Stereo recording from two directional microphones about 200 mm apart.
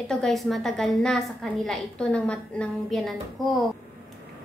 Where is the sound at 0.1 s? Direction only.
Centre (ahead or behind).